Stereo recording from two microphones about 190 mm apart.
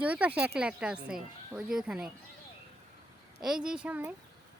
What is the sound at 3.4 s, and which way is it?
Speech, 5° right (ahead or behind).